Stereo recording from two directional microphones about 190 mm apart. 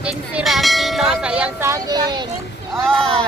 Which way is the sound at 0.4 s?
Centre (ahead or behind).